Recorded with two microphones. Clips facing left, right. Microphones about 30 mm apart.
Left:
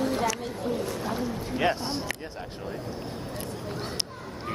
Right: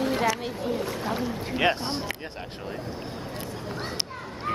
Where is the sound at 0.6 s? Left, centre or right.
Right.